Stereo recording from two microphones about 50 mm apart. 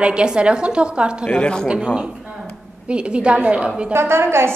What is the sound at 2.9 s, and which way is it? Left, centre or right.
Speech, right.